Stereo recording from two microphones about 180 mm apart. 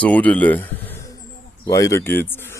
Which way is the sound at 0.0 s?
5° left (ahead or behind).